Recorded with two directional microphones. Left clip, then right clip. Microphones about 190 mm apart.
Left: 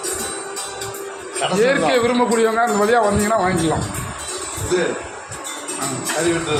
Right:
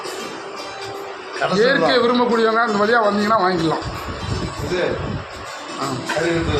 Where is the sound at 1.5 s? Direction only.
5° left (ahead or behind).